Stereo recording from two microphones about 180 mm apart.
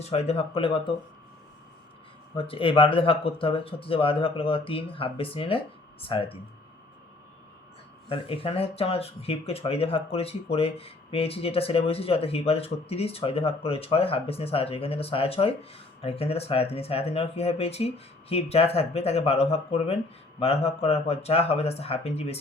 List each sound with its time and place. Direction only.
0.0 s speech: 35° left (ahead or behind)
2.3 s speech: 30° left (ahead or behind)
8.1 s speech: 30° left (ahead or behind)